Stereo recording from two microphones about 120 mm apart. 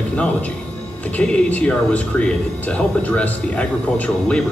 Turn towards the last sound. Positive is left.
turn(degrees=10)  # may be behind; listen again after turning